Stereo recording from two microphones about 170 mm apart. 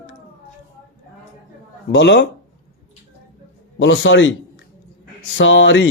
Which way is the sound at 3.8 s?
90° left.